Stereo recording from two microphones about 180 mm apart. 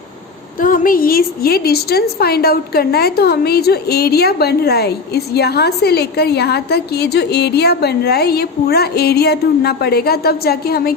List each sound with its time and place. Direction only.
0.6 s a woman's voice: 50° left (ahead or behind)